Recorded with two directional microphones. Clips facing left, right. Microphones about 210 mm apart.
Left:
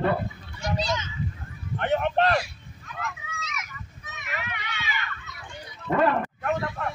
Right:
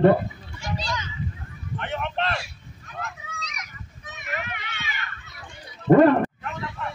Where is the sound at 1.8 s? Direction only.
45° left (ahead or behind).